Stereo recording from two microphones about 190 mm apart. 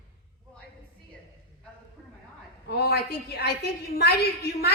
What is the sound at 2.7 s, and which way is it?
Speech, 55° left (ahead or behind).